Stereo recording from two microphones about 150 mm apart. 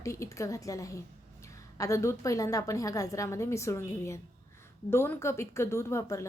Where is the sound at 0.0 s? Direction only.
20° left (ahead or behind).